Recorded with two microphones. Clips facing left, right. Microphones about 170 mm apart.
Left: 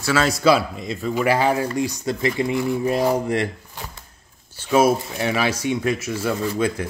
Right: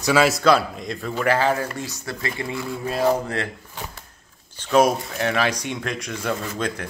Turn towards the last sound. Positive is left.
turn(degrees=10)  # may be behind; listen again after turning